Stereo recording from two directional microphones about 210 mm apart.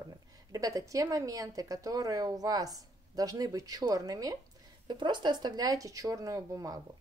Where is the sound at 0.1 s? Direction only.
15° right (ahead or behind).